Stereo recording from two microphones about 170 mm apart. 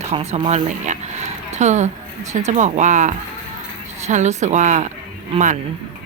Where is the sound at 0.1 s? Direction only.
35° right (ahead or behind).